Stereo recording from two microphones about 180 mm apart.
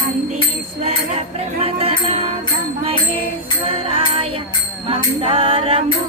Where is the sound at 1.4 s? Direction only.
35° right (ahead or behind).